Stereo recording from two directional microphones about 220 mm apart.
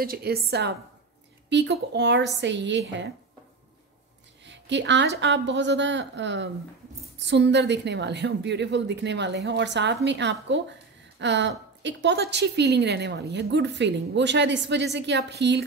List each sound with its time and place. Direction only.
0.0 s a woman's voice: 45° right (ahead or behind)
4.5 s a woman's voice: 55° right (ahead or behind)